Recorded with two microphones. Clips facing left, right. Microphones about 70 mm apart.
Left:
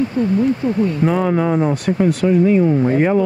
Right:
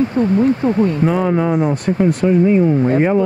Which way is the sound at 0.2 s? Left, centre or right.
Right.